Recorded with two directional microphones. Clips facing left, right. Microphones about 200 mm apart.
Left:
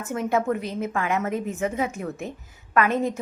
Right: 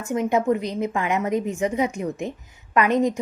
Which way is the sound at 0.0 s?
15° right (ahead or behind).